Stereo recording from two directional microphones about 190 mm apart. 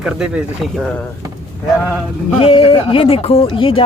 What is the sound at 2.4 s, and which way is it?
Speech, 30° left (ahead or behind).